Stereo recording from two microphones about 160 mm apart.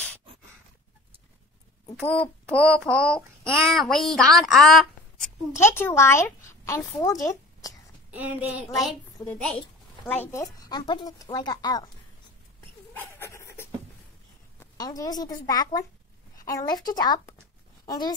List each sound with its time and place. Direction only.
2.0 s a child's voice: 5° left (ahead or behind)
5.6 s speech: 15° left (ahead or behind)
7.2 s a sound: 20° left (ahead or behind)
8.1 s speech: 10° right (ahead or behind)
9.3 s a child's voice: 10° left (ahead or behind)
10.4 s speech: 20° left (ahead or behind)
12.9 s dog: 15° left (ahead or behind)
14.8 s speech: 25° left (ahead or behind)